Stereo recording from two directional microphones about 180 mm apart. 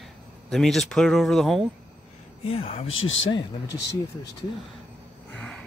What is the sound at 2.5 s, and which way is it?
Speech, 35° left (ahead or behind).